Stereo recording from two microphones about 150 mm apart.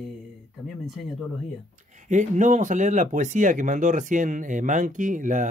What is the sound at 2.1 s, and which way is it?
Speech, 55° right (ahead or behind).